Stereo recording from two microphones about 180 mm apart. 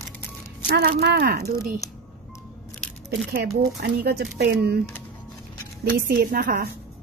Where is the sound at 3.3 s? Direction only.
60° right (ahead or behind).